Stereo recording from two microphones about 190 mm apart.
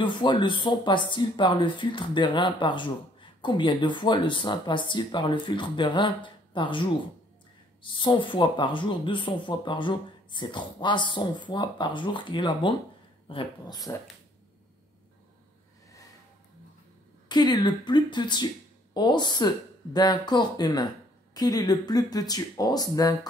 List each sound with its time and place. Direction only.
0.0 s speech: 25° left (ahead or behind)
17.3 s speech: 20° left (ahead or behind)